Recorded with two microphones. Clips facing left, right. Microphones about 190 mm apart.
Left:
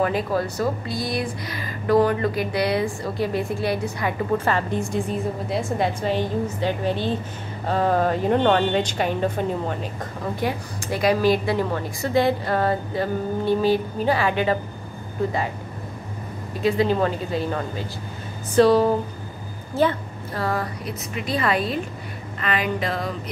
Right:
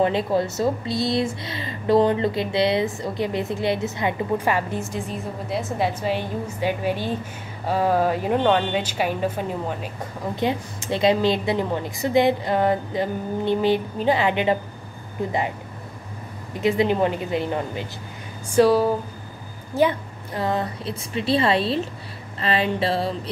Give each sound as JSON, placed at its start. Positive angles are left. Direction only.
{"t": 0.0, "sound": "speech", "side_deg": -25}
{"t": 4.6, "sound": "a woman's voice", "side_deg": -5}
{"t": 10.3, "sound": "a woman's voice", "side_deg": -20}
{"t": 16.5, "sound": "a woman's voice", "side_deg": -20}
{"t": 22.4, "sound": "a sound", "side_deg": -30}